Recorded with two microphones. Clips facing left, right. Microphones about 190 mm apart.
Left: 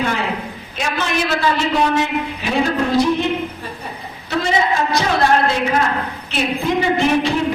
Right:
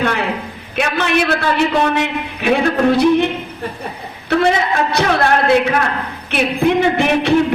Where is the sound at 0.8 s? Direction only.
60° right (ahead or behind).